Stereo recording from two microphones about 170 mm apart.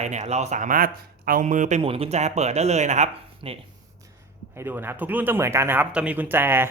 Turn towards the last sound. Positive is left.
turn(degrees=-15)  # may be behind; listen again after turning